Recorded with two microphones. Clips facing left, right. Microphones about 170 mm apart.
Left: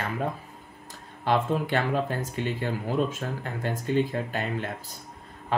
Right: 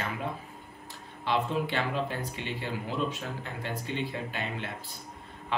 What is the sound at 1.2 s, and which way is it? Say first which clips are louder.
Speech: left 4 dB; 50° left (ahead or behind).